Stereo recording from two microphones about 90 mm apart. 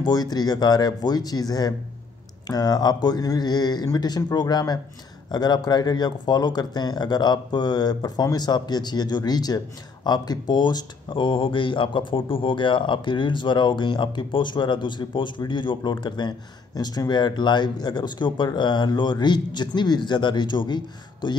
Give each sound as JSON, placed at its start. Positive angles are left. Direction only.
{"t": 0.0, "sound": "speech", "side_deg": 50}